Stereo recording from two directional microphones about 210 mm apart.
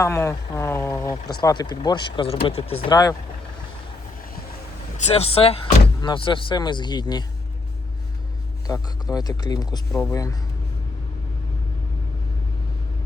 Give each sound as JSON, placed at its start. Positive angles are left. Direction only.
{"t": 0.0, "sound": "speech", "side_deg": 15}
{"t": 4.9, "sound": "speech", "side_deg": 30}
{"t": 9.1, "sound": "speech", "side_deg": 20}